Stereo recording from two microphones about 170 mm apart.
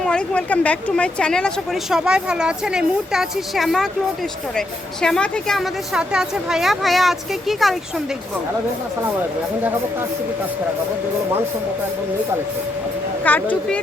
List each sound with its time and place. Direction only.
0.0 s a woman's voice: 5° left (ahead or behind)
13.2 s speech: 10° left (ahead or behind)